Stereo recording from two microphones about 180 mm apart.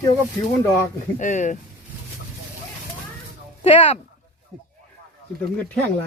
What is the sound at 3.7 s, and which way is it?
Speech, 30° left (ahead or behind).